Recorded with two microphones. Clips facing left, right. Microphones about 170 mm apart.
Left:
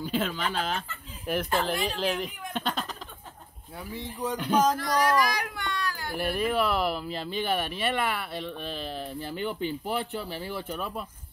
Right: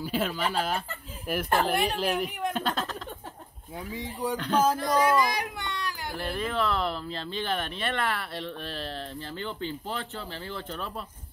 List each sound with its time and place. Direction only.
0.0 s speech: 5° right (ahead or behind)
1.5 s speech: 60° right (ahead or behind)
2.5 s speech: centre (ahead or behind)
3.7 s speech: 15° right (ahead or behind)
4.4 s speech: 10° left (ahead or behind)
4.7 s speech: 25° right (ahead or behind)
6.1 s speech: 10° left (ahead or behind)